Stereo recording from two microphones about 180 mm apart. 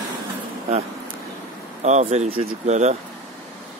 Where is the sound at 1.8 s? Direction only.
40° right (ahead or behind).